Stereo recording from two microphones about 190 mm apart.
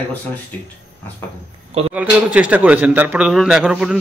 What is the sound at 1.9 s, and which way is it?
A man's voice, 5° right (ahead or behind).